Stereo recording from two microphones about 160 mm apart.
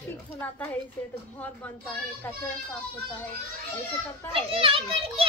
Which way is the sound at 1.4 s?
10° left (ahead or behind).